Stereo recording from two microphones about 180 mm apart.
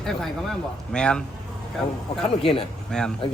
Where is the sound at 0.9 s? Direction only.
5° left (ahead or behind).